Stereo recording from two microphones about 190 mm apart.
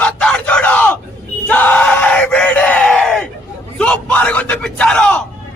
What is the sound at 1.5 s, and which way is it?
Crowd, 10° left (ahead or behind).